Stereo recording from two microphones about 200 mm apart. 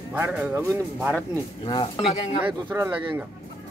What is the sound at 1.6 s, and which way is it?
Speech, 25° left (ahead or behind).